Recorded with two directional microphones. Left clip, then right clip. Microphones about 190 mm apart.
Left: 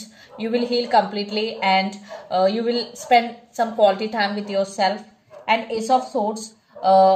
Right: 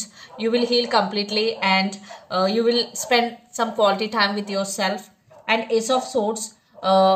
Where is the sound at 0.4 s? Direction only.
40° right (ahead or behind).